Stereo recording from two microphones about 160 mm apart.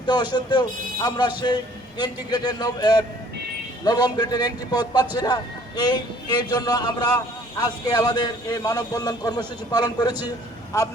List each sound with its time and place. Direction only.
0.0 s a man's voice: 25° left (ahead or behind)